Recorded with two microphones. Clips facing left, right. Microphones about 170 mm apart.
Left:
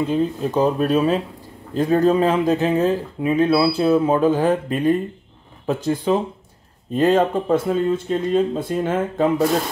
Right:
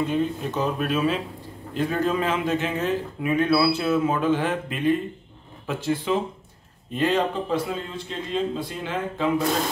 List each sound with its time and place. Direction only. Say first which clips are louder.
0.0 s speech: left 4 dB; 30° left (ahead or behind)